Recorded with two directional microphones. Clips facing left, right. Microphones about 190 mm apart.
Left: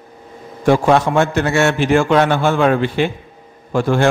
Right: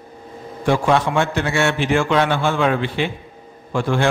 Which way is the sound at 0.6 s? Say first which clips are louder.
Left 4 dB; 45° left (ahead or behind).